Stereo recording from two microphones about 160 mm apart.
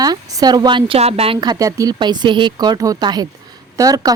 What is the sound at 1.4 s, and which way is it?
A woman's voice, 25° right (ahead or behind).